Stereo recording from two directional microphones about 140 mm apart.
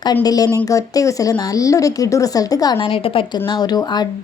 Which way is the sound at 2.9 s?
40° left (ahead or behind).